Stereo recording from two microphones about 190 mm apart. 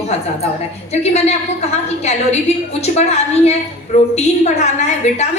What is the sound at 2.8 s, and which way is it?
A woman's voice, 35° left (ahead or behind).